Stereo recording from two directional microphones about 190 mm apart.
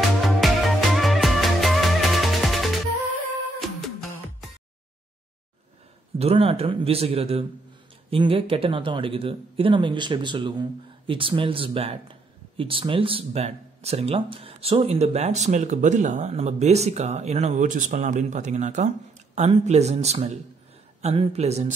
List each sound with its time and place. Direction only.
0.2 s music: centre (ahead or behind)
6.1 s speech: 30° right (ahead or behind)